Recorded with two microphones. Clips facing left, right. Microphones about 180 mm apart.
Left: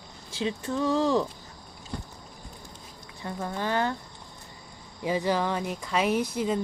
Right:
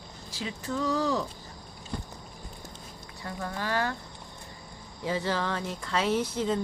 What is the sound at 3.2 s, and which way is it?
Speech, 20° left (ahead or behind).